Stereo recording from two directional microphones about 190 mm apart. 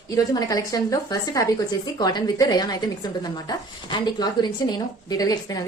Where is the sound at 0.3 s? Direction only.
20° left (ahead or behind).